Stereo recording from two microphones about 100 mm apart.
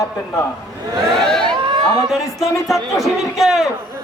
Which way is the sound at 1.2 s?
5° left (ahead or behind).